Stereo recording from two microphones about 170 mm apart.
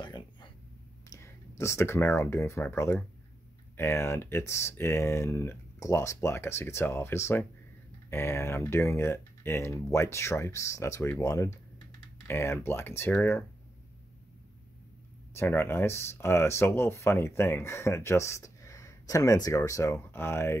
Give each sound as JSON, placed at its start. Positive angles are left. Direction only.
{"t": 0.0, "sound": "a sound", "side_deg": 25}
{"t": 1.6, "sound": "speech", "side_deg": 15}
{"t": 15.3, "sound": "speech", "side_deg": 15}